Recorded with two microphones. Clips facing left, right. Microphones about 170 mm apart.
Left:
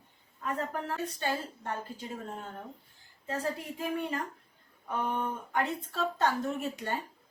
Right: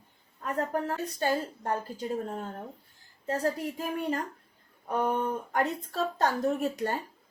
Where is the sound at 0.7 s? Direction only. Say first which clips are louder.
Right 4 dB; 40° right (ahead or behind).